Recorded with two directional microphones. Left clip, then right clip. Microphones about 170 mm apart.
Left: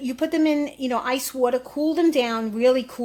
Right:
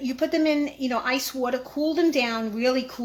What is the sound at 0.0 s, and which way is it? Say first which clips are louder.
A woman's voice: left 1 dB; 50° left (ahead or behind).